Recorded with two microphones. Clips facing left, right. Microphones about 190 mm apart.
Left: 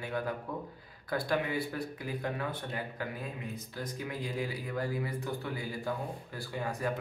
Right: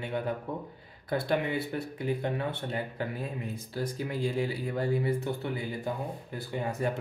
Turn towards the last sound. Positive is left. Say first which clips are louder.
# right 3 dB
turn(degrees=-25)  # may be behind; listen again after turning